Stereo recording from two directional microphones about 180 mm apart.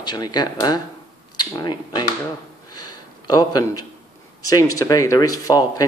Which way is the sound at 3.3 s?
20° left (ahead or behind).